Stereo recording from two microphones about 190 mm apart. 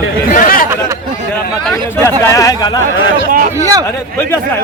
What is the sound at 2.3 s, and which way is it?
Speech, 20° left (ahead or behind).